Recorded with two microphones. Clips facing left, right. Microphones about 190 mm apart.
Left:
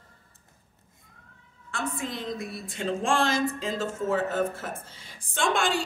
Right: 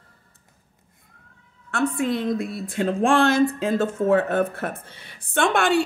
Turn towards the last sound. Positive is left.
turn(degrees=-65)  # may be behind; listen again after turning